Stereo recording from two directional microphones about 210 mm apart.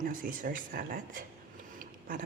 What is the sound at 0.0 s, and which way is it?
Speech, 40° right (ahead or behind).